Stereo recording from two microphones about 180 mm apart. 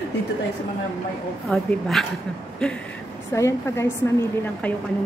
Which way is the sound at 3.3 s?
15° left (ahead or behind).